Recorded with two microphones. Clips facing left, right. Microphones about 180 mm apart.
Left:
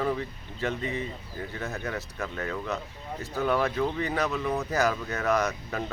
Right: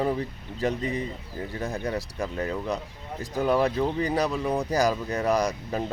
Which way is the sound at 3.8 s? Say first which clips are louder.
Right 3 dB; 30° right (ahead or behind).